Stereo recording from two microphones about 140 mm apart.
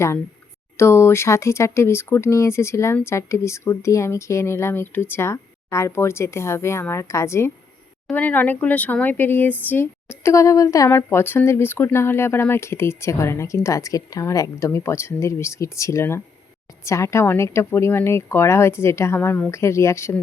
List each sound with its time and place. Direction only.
0.8 s speech: 20° left (ahead or behind)